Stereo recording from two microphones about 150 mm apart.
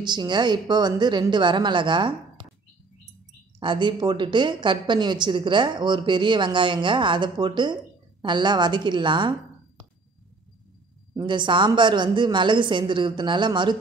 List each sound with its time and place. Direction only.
0.0 s speech: 30° right (ahead or behind)
3.5 s a woman's voice: 30° right (ahead or behind)
11.1 s a woman's voice: 30° right (ahead or behind)